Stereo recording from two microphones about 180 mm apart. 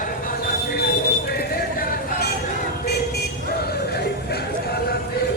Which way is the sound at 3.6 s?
60° left (ahead or behind).